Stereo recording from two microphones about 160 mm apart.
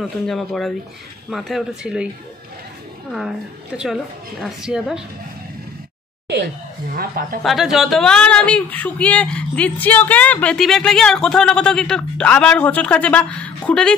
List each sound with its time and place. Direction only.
0.0 s a woman's voice: centre (ahead or behind)
3.1 s a woman's voice: 5° right (ahead or behind)
6.2 s a sound: 90° right
7.0 s a woman's voice: 65° right (ahead or behind)
7.4 s speech: centre (ahead or behind)